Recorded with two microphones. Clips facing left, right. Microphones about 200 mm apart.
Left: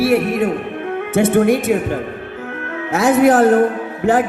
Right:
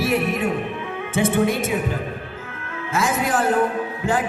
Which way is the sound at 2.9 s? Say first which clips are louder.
Left 10 dB; 65° left (ahead or behind).